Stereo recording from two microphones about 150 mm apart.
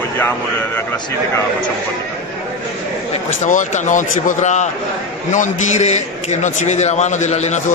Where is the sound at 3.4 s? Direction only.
55° left (ahead or behind).